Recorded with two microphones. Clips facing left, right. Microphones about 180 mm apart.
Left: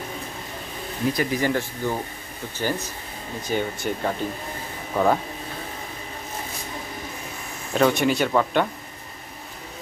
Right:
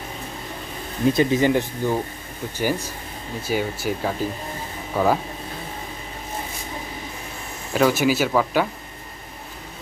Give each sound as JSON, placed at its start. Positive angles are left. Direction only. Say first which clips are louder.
{"t": 1.1, "sound": "speech", "louder": "right 6 dB", "side_deg": -25}
{"t": 7.7, "sound": "speech", "louder": "right 1 dB", "side_deg": -5}